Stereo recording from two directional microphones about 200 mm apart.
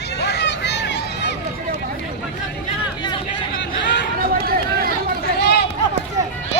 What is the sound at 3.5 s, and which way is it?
Chatter, 65° left (ahead or behind).